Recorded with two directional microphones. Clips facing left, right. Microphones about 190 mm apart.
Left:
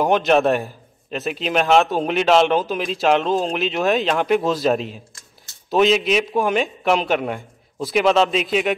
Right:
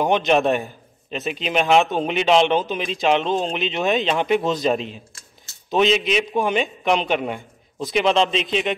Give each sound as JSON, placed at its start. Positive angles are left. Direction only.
{"t": 0.0, "sound": "a man's voice", "side_deg": 0}